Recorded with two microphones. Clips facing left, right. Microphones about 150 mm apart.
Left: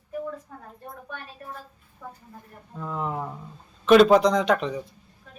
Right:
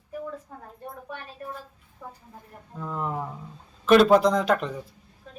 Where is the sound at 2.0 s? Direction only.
10° right (ahead or behind).